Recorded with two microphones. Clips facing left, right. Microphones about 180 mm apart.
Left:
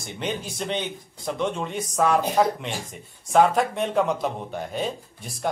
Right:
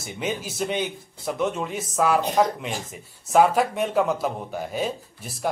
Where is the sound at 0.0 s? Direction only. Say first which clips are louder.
Right 1 dB; 5° right (ahead or behind).